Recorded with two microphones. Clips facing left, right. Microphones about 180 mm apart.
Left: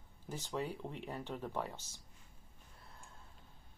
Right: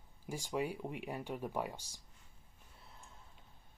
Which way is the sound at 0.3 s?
10° right (ahead or behind).